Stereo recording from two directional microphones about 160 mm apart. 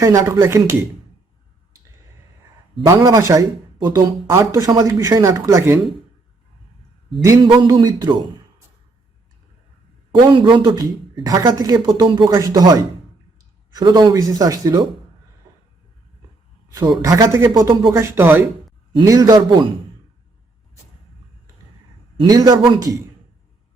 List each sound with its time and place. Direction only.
0.0 s speech: 20° right (ahead or behind)
2.8 s speech: 20° right (ahead or behind)
7.3 s speech: 25° right (ahead or behind)
10.2 s speech: 30° right (ahead or behind)
16.7 s speech: 20° right (ahead or behind)
22.2 s speech: 25° right (ahead or behind)